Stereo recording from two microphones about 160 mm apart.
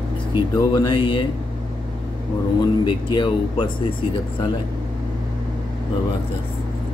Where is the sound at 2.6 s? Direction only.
30° left (ahead or behind).